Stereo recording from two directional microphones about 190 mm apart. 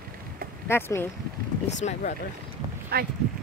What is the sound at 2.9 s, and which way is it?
Speech, 55° right (ahead or behind).